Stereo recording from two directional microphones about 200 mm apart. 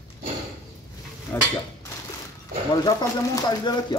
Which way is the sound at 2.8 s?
20° left (ahead or behind).